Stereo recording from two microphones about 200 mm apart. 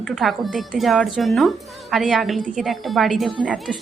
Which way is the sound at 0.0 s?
Centre (ahead or behind).